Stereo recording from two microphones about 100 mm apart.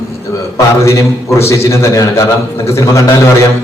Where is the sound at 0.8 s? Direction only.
30° left (ahead or behind).